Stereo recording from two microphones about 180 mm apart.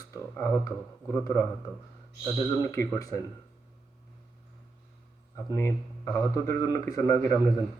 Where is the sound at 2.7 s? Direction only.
15° left (ahead or behind).